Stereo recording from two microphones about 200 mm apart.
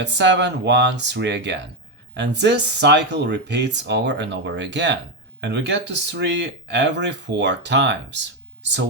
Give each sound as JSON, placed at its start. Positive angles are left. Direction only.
{"t": 0.0, "sound": "speech", "side_deg": -60}